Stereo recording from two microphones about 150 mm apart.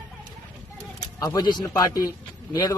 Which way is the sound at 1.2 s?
25° left (ahead or behind).